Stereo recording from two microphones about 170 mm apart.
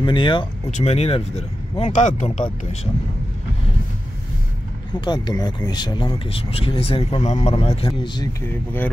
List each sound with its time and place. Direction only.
0.0 s speech: 30° left (ahead or behind)
0.7 s speech: 40° left (ahead or behind)
5.0 s speech: 25° left (ahead or behind)